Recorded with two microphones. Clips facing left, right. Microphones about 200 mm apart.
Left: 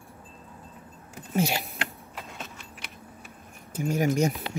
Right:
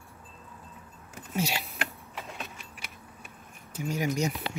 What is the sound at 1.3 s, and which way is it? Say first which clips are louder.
Speech: left 5 dB; 50° left (ahead or behind).